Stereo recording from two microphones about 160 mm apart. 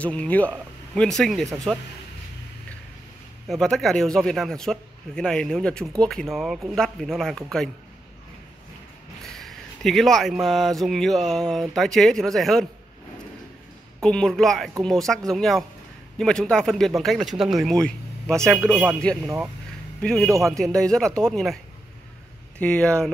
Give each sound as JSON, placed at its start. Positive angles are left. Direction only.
{"t": 0.0, "sound": "speech", "side_deg": 10}
{"t": 3.4, "sound": "speech", "side_deg": 0}
{"t": 9.2, "sound": "speech", "side_deg": 0}
{"t": 14.0, "sound": "speech", "side_deg": 5}
{"t": 20.2, "sound": "a man's voice", "side_deg": -20}
{"t": 20.5, "sound": "speech", "side_deg": 5}
{"t": 22.6, "sound": "speech", "side_deg": 5}